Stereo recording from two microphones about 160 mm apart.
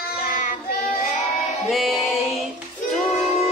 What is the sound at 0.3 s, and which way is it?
Child singing, 55° left (ahead or behind).